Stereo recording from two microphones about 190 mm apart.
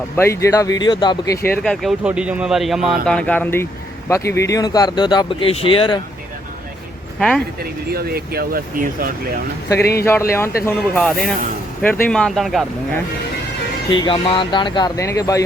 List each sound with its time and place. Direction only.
0.2 s speech: 15° left (ahead or behind)
1.5 s speech: 5° left (ahead or behind); by 6.0 s 25° left (ahead or behind)
7.2 s speech: 5° left (ahead or behind)
7.6 s speech: 55° right (ahead or behind)
9.7 s speech: 55° left (ahead or behind)
10.0 s speech: 15° left (ahead or behind)
13.9 s speech: 25° left (ahead or behind)